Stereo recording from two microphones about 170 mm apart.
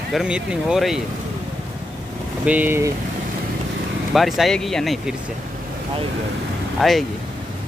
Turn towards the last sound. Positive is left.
turn(degrees=0)  # may be behind; listen again after turning